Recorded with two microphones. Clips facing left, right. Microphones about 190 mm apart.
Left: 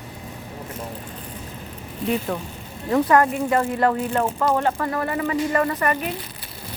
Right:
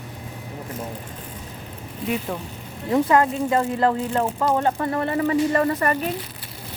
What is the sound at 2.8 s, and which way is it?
Speech, 20° right (ahead or behind).